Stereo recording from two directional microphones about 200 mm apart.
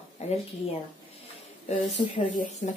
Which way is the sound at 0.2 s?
35° left (ahead or behind).